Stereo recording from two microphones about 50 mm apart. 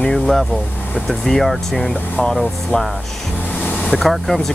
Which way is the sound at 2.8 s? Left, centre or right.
Centre.